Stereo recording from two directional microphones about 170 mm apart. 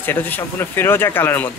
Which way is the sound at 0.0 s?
10° left (ahead or behind).